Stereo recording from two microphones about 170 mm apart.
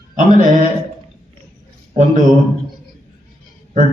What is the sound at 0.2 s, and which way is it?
Speech, 50° right (ahead or behind).